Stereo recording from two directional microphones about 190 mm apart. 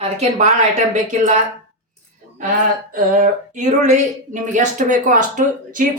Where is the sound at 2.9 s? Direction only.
45° right (ahead or behind).